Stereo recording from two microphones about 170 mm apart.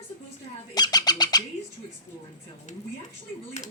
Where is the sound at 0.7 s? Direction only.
25° left (ahead or behind).